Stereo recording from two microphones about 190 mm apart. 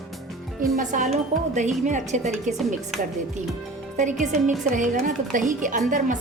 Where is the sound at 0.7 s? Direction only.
40° right (ahead or behind).